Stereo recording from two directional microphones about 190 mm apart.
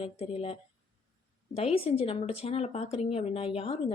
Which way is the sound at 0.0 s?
30° left (ahead or behind).